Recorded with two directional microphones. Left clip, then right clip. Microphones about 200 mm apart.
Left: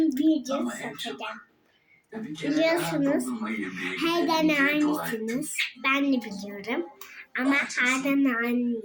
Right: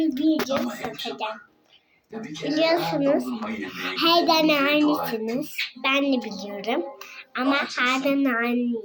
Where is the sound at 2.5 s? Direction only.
20° left (ahead or behind).